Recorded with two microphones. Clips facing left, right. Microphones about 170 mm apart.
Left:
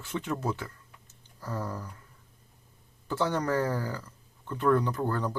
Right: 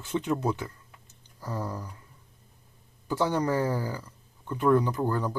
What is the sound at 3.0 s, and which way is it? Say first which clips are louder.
Speech: right 2 dB; 10° right (ahead or behind).